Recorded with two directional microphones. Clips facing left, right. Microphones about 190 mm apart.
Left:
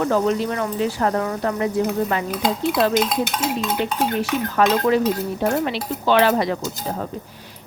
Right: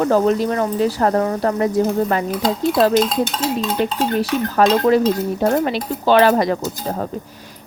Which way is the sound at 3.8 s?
40° right (ahead or behind).